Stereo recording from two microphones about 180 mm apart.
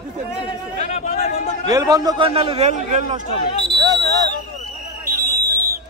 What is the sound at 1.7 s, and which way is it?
A man's voice, 20° right (ahead or behind).